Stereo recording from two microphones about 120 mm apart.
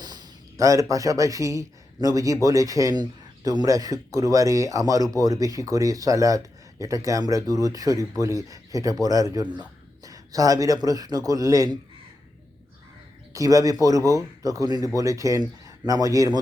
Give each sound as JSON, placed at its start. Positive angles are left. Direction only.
{"t": 0.0, "sound": "speech", "side_deg": -35}
{"t": 13.3, "sound": "speech", "side_deg": -30}